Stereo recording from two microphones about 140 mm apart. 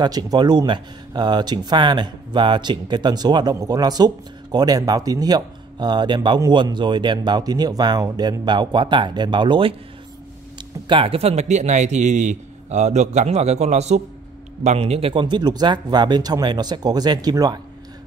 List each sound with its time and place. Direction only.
0.0 s speech: 30° right (ahead or behind)
10.9 s a man's voice: 40° right (ahead or behind)